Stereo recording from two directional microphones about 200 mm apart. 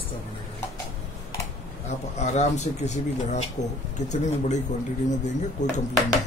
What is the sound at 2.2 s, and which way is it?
A man's voice, 35° left (ahead or behind).